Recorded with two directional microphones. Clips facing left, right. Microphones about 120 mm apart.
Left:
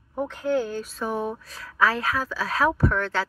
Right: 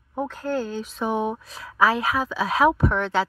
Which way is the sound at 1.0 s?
20° right (ahead or behind).